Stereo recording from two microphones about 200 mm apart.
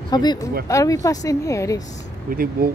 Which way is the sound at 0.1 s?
20° left (ahead or behind).